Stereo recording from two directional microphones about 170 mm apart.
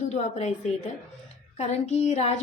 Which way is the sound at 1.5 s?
40° left (ahead or behind).